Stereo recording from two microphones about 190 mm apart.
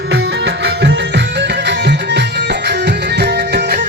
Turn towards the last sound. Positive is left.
turn(degrees=-60)  # may be behind; listen again after turning